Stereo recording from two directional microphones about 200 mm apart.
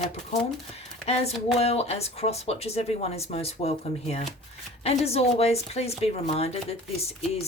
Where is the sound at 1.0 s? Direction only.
30° left (ahead or behind).